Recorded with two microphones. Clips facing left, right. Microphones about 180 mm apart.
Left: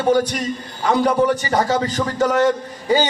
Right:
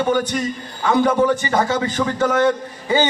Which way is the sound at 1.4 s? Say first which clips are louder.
Left 1 dB; 40° left (ahead or behind).